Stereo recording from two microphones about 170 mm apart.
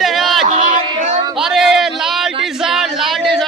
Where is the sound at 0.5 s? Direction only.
45° right (ahead or behind).